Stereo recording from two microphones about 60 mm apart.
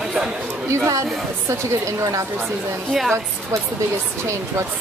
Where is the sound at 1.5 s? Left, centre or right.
Right.